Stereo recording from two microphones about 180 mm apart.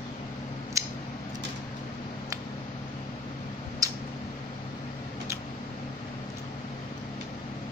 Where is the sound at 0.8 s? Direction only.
15° right (ahead or behind).